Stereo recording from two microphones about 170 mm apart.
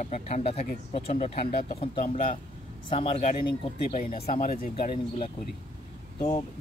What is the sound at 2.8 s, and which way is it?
Speech, 35° left (ahead or behind).